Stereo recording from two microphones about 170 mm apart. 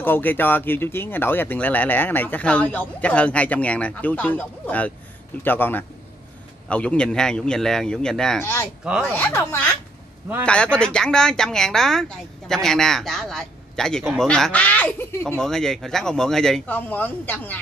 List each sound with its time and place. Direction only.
0.0 s speech: 10° left (ahead or behind)